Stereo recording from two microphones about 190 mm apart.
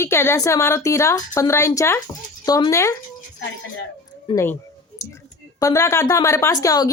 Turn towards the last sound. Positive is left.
turn(degrees=15)  # may be behind; listen again after turning